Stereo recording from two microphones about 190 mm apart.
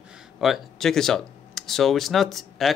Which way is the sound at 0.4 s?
Centre (ahead or behind).